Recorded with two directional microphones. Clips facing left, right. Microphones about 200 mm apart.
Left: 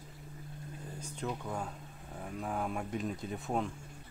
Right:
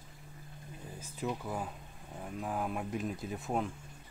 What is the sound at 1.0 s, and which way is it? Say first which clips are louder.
Speech: right 2 dB; 5° right (ahead or behind).